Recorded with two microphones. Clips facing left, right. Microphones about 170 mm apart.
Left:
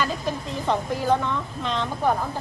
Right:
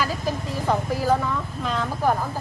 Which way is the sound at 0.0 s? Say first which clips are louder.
Even; 5° right (ahead or behind).